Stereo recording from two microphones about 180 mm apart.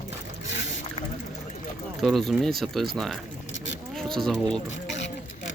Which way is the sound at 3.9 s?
Centre (ahead or behind).